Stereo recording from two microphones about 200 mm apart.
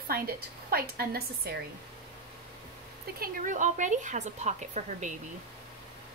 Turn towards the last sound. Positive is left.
turn(degrees=-35)  # may be behind; listen again after turning